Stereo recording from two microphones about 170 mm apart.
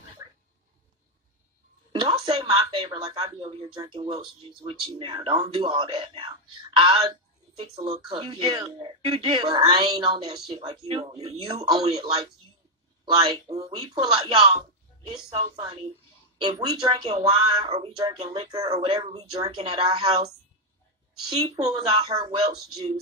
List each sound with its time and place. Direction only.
1.9 s speech: 25° right (ahead or behind)
15.3 s a woman's voice: 35° right (ahead or behind)
16.4 s speech: 25° right (ahead or behind)
17.1 s a woman's voice: 40° right (ahead or behind)
17.6 s speech: 20° right (ahead or behind)
21.4 s speech: 25° right (ahead or behind)